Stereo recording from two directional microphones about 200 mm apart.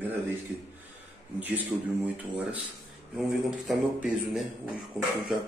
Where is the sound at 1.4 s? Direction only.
10° right (ahead or behind).